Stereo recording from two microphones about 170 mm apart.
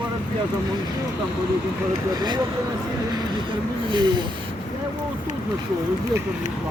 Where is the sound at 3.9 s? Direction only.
25° right (ahead or behind).